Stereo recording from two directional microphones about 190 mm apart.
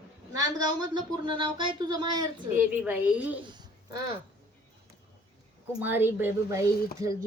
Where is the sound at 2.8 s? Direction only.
10° right (ahead or behind).